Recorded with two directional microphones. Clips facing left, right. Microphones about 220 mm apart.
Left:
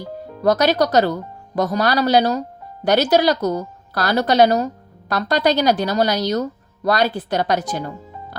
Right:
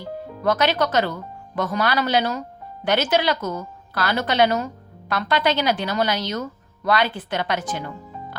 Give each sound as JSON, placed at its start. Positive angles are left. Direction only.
{"t": 0.0, "sound": "a woman's voice", "side_deg": 40}